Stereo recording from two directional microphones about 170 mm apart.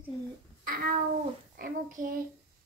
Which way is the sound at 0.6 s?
60° right (ahead or behind).